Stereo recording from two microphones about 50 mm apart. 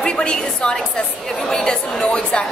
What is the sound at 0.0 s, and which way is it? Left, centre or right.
A woman's voice, centre.